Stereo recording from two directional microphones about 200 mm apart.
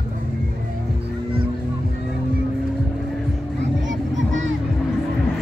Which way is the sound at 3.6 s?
65° right (ahead or behind).